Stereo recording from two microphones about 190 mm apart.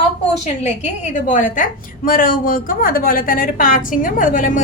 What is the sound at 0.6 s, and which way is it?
A woman's voice, 40° left (ahead or behind).